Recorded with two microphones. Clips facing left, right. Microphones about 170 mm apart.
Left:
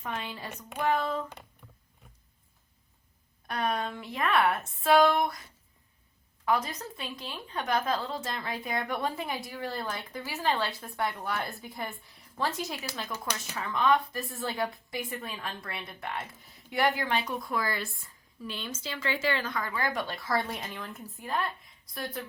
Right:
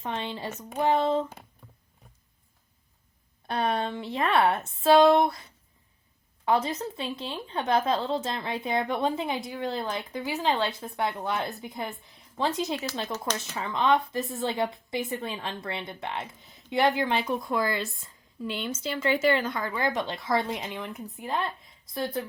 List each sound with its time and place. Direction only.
0.0 s speech: 25° right (ahead or behind)
3.4 s speech: 30° right (ahead or behind)
6.4 s speech: 30° right (ahead or behind)